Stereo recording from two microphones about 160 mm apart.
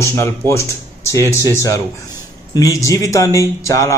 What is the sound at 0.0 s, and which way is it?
A man's voice, 15° left (ahead or behind).